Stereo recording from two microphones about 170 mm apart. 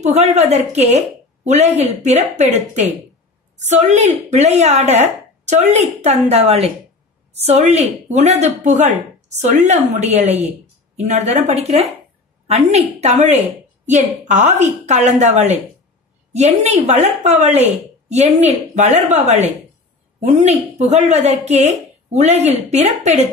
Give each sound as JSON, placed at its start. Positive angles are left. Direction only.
{"t": 0.0, "sound": "a woman's voice", "side_deg": -40}